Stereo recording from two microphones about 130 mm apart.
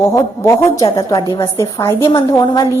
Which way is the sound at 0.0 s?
25° left (ahead or behind).